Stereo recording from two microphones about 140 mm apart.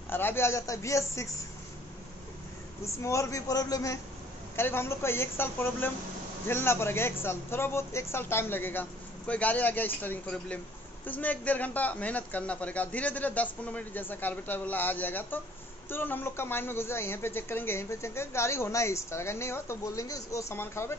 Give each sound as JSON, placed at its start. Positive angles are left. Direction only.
{"t": 0.1, "sound": "speech", "side_deg": 15}
{"t": 2.8, "sound": "a man's voice", "side_deg": 20}